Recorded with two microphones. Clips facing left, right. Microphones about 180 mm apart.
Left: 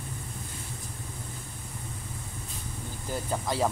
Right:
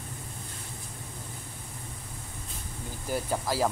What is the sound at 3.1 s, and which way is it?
Speech, 5° right (ahead or behind).